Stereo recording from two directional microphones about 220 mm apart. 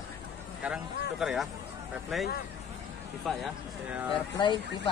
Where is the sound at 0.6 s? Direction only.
5° right (ahead or behind).